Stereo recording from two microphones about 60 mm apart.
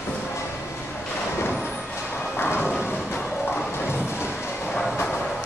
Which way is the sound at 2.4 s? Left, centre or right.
Left.